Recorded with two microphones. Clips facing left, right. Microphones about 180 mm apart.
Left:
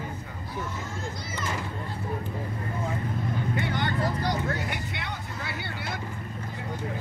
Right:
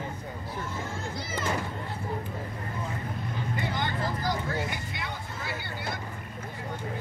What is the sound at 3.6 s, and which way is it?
Vehicle, 65° left (ahead or behind).